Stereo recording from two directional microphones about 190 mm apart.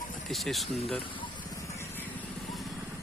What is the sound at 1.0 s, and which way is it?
Vehicle, 25° left (ahead or behind).